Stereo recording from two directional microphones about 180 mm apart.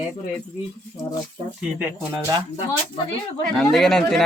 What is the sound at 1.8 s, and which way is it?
Speech, 15° right (ahead or behind).